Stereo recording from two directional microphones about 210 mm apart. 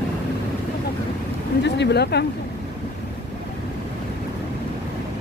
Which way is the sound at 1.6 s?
55° left (ahead or behind).